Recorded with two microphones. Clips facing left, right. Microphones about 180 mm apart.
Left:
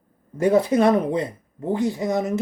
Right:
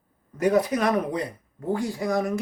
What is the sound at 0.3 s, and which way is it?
Speech, 25° left (ahead or behind).